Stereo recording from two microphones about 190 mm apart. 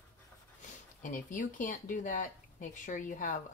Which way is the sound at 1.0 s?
45° left (ahead or behind).